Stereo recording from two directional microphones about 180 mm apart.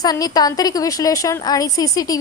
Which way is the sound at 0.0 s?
20° left (ahead or behind).